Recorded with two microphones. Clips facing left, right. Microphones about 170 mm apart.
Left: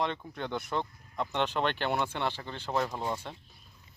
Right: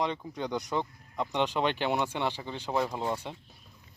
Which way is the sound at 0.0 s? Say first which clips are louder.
Right 2 dB; 15° right (ahead or behind).